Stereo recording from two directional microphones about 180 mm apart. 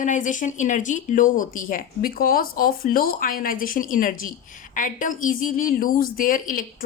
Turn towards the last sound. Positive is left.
turn(degrees=50)  # may be behind; listen again after turning